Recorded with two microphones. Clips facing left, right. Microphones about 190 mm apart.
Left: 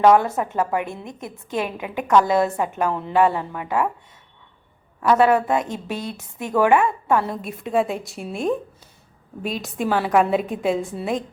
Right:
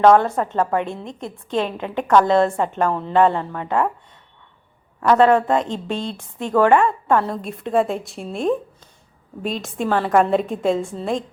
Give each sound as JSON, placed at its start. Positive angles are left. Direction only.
{"t": 0.0, "sound": "a woman's voice", "side_deg": 10}
{"t": 5.0, "sound": "a woman's voice", "side_deg": 5}
{"t": 5.6, "sound": "speech", "side_deg": -20}
{"t": 6.1, "sound": "a woman's voice", "side_deg": 10}